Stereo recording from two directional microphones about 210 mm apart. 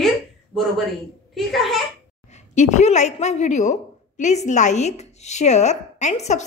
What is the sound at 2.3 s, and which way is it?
A woman's voice, 35° left (ahead or behind).